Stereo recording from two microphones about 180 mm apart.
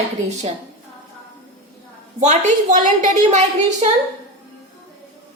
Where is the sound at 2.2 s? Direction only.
40° right (ahead or behind).